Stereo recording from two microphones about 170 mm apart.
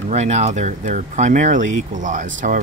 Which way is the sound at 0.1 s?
40° right (ahead or behind).